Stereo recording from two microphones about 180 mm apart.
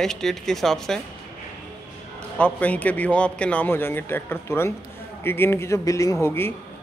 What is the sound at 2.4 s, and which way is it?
A man's voice, 10° left (ahead or behind).